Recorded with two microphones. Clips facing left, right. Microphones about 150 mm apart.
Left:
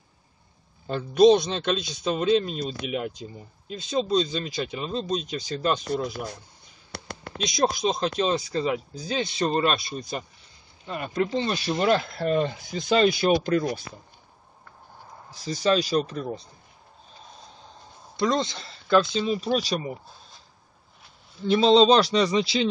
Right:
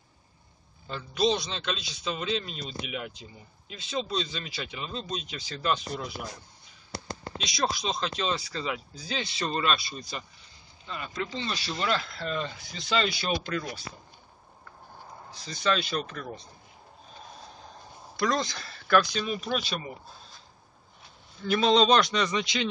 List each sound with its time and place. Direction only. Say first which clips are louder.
0.8 s a man's voice: left 10 dB; 50° left (ahead or behind)
6.9 s speech: even; 65° left (ahead or behind); by 13.8 s 45° left (ahead or behind)
15.3 s a man's voice: left 6 dB; 40° left (ahead or behind)
18.1 s speech: left 4 dB; 20° left (ahead or behind); by 19.8 s 40° left (ahead or behind)
21.5 s a man's voice: left 5 dB; 30° left (ahead or behind)